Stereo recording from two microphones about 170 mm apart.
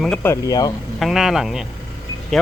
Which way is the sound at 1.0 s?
Centre (ahead or behind).